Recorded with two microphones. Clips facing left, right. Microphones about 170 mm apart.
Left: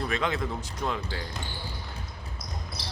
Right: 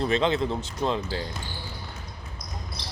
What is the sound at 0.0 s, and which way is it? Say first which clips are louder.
Speech: right 5 dB; 25° right (ahead or behind).